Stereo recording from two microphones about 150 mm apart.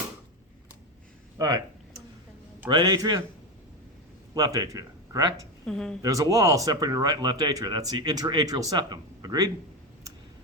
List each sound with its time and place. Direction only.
1.4 s speech: 25° right (ahead or behind)
2.6 s speech: 25° right (ahead or behind)
4.4 s speech: 25° right (ahead or behind)
5.6 s speech: 5° left (ahead or behind)
6.0 s speech: 20° right (ahead or behind)